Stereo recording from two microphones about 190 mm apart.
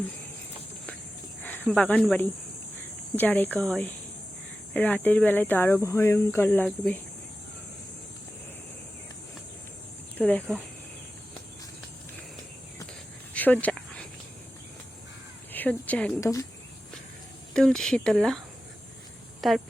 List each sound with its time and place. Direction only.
1.4 s speech: 10° left (ahead or behind)
10.2 s speech: 10° left (ahead or behind)
13.3 s a sound: 10° left (ahead or behind)
15.5 s speech: 10° left (ahead or behind)
16.2 s speech: 15° left (ahead or behind)
17.5 s speech: 5° left (ahead or behind)
19.4 s speech: centre (ahead or behind)